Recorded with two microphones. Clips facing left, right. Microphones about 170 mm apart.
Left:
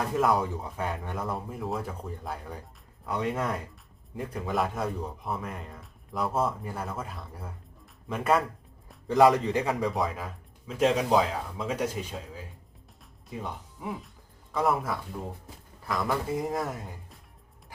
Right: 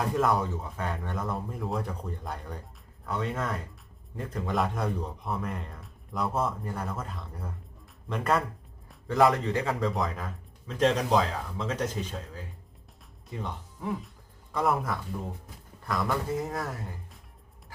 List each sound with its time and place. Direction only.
0.2 s a man's voice: centre (ahead or behind)
0.5 s a man's voice: 15° left (ahead or behind)
3.1 s a man's voice: 15° left (ahead or behind)
9.0 s speech: 15° left (ahead or behind)
9.8 s a man's voice: 5° left (ahead or behind)
16.5 s speech: 20° left (ahead or behind)